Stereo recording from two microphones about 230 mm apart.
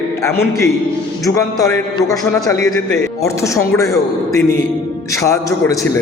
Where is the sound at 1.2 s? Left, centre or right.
Centre.